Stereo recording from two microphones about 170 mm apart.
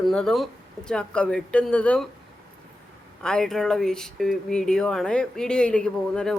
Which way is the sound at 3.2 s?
5° left (ahead or behind).